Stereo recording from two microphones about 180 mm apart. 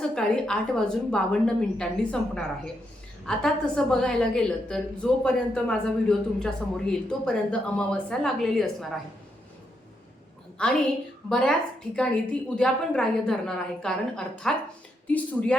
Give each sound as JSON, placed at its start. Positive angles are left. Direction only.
{"t": 0.0, "sound": "a woman's voice", "side_deg": 5}
{"t": 10.6, "sound": "a woman's voice", "side_deg": 5}